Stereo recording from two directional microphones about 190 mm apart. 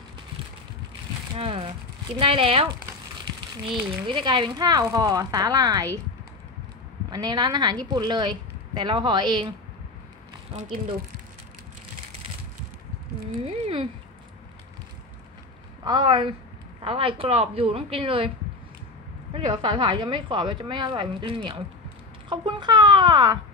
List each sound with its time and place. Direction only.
1.3 s speech: 30° right (ahead or behind)
4.1 s speech: 25° right (ahead or behind)
7.1 s speech: 20° right (ahead or behind)
13.4 s speech: 30° right (ahead or behind)
15.8 s speech: 25° right (ahead or behind)
19.3 s speech: 25° right (ahead or behind)